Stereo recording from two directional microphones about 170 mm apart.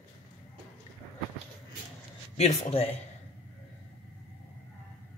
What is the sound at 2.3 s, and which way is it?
Speech, 40° left (ahead or behind).